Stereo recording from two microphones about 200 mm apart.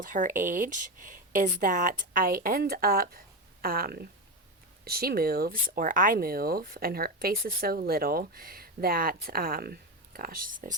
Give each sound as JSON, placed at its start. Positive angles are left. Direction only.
{"t": 0.0, "sound": "speech", "side_deg": -40}